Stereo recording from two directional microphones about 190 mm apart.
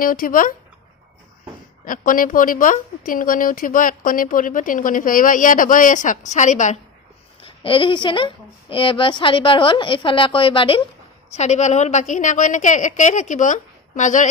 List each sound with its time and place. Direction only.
0.0 s a woman's voice: 45° left (ahead or behind)
1.9 s a woman's voice: 45° left (ahead or behind)
7.4 s a woman's voice: 25° left (ahead or behind)